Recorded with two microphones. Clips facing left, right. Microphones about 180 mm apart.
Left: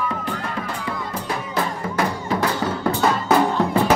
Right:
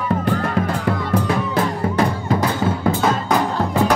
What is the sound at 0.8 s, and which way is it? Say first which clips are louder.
Music: right 8 dB; 55° right (ahead or behind).